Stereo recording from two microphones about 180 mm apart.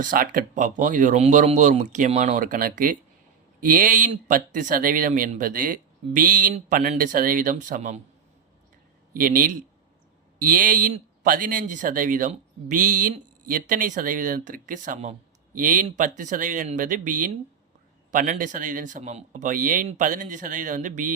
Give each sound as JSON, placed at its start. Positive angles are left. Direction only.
{"t": 0.0, "sound": "speech", "side_deg": -50}
{"t": 9.1, "sound": "speech", "side_deg": -50}